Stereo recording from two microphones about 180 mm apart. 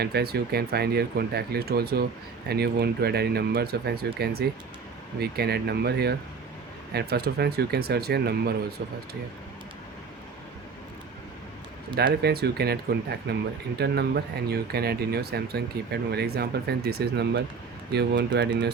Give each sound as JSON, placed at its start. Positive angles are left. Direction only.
{"t": 0.0, "sound": "speech", "side_deg": -60}
{"t": 11.9, "sound": "speech", "side_deg": -60}